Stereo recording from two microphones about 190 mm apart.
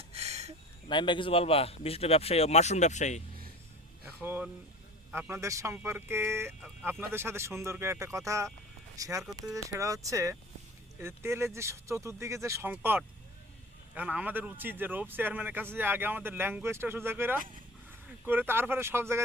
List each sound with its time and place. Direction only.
0.1 s a sound: 35° right (ahead or behind)
0.9 s a man's voice: 25° left (ahead or behind)
4.0 s music: 10° right (ahead or behind)
5.1 s speech: 15° right (ahead or behind)